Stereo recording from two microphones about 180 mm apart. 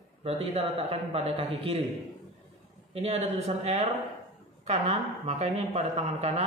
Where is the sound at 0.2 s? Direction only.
35° right (ahead or behind).